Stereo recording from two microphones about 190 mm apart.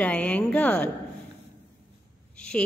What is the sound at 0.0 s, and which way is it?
Speech, 5° left (ahead or behind).